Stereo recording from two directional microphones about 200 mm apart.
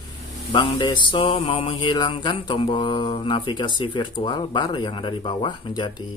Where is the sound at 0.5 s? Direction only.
20° left (ahead or behind).